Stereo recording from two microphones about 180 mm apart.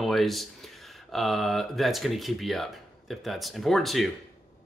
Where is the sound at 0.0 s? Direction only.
Centre (ahead or behind).